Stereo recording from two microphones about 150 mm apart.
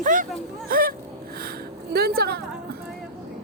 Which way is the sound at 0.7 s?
75° right (ahead or behind).